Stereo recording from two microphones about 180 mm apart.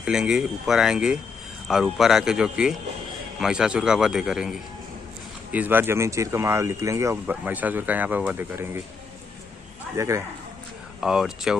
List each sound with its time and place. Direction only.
0.0 s speech: 5° right (ahead or behind)
9.9 s speech: 15° right (ahead or behind)
11.0 s speech: 5° right (ahead or behind)